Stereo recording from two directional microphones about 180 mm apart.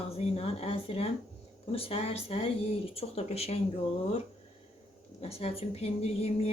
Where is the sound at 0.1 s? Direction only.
35° left (ahead or behind).